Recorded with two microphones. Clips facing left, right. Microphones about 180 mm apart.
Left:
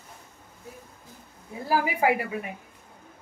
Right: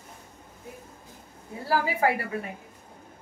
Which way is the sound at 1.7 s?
15° left (ahead or behind).